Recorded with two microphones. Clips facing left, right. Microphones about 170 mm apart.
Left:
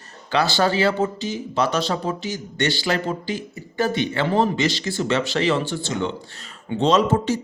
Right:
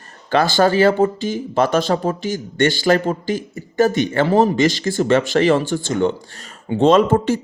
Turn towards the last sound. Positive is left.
turn(degrees=-55)  # may be behind; listen again after turning